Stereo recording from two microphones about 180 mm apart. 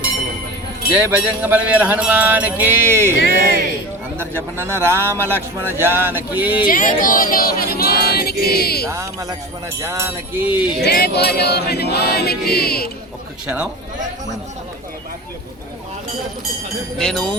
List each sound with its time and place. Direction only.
0.9 s speech: 10° right (ahead or behind)
3.2 s speech: 60° right (ahead or behind)
4.2 s speech: 15° right (ahead or behind)
6.7 s choir: 50° left (ahead or behind)
9.8 s speech: 15° right (ahead or behind)
10.8 s choir: 65° left (ahead or behind)
17.0 s speech: 5° left (ahead or behind)